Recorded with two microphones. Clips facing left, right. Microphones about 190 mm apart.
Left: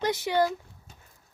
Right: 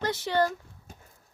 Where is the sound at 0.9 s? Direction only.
50° right (ahead or behind).